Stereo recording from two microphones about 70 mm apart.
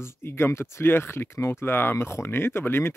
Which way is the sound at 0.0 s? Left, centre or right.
Left.